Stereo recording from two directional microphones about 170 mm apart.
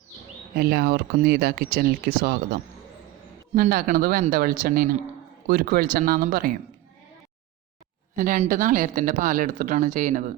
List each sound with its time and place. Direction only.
0.5 s speech: 65° right (ahead or behind)
8.1 s speech: 50° right (ahead or behind)